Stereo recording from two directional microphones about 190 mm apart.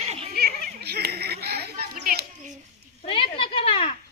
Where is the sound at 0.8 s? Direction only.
55° right (ahead or behind).